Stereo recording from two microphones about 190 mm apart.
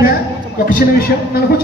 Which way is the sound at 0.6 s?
50° left (ahead or behind).